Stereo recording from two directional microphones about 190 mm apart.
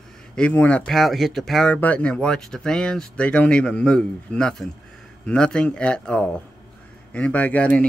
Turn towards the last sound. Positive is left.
turn(degrees=5)  # may be behind; listen again after turning